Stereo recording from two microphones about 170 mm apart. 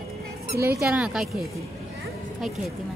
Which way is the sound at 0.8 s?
5° right (ahead or behind).